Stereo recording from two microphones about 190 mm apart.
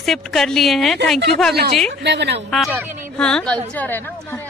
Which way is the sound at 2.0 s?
60° right (ahead or behind).